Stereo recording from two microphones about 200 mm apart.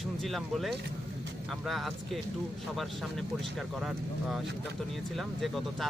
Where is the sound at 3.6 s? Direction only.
5° right (ahead or behind).